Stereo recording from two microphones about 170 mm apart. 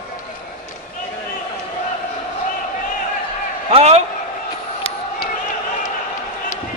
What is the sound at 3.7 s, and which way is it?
Speech, 40° right (ahead or behind).